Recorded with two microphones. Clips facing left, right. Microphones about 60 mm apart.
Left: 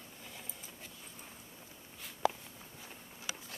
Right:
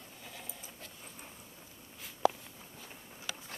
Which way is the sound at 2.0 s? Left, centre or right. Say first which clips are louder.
Right 3 dB; centre.